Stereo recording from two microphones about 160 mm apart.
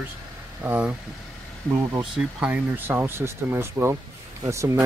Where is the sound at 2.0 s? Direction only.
5° right (ahead or behind).